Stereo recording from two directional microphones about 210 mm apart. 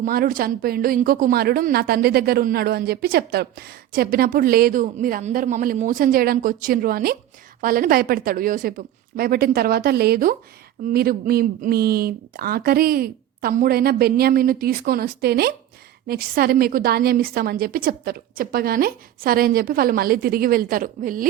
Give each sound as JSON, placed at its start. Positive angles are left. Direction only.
{"t": 0.0, "sound": "a woman's voice", "side_deg": -45}